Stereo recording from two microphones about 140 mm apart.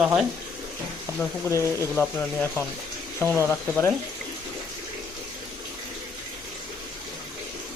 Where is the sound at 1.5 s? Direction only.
20° right (ahead or behind).